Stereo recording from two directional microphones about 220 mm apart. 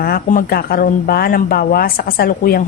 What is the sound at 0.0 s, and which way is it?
A woman's voice, 40° left (ahead or behind).